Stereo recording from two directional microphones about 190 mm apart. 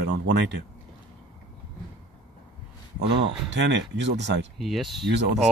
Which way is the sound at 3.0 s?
65° right (ahead or behind).